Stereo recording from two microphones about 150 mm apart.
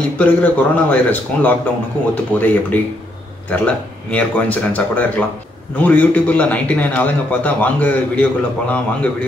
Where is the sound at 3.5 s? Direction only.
10° left (ahead or behind).